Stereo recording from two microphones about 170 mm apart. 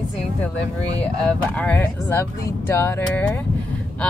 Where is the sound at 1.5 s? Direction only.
10° left (ahead or behind).